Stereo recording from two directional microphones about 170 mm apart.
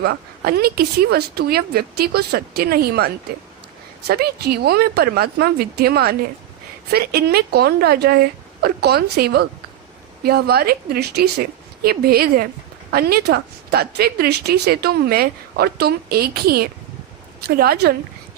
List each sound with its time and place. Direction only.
0.0 s a woman's voice: 65° right (ahead or behind)